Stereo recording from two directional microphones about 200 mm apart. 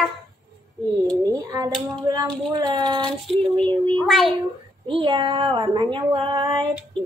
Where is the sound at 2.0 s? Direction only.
20° right (ahead or behind).